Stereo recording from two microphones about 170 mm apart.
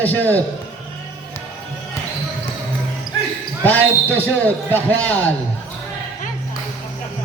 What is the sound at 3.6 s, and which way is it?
A man's voice, 10° left (ahead or behind).